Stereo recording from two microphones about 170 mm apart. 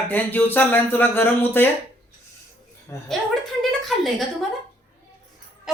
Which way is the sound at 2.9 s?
15° left (ahead or behind).